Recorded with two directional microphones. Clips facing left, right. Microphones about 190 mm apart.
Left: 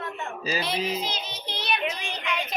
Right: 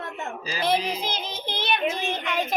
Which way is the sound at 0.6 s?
50° right (ahead or behind).